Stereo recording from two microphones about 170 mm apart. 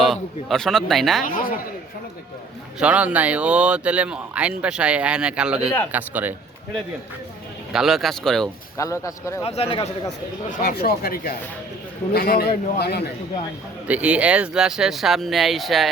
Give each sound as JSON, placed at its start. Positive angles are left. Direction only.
{"t": 0.0, "sound": "speech", "side_deg": 0}
{"t": 1.2, "sound": "speech", "side_deg": 55}
{"t": 2.7, "sound": "speech", "side_deg": -5}
{"t": 7.7, "sound": "speech", "side_deg": 0}
{"t": 8.8, "sound": "speech", "side_deg": 20}
{"t": 9.4, "sound": "speech", "side_deg": 35}
{"t": 10.5, "sound": "a man's voice", "side_deg": 60}
{"t": 13.8, "sound": "speech", "side_deg": -10}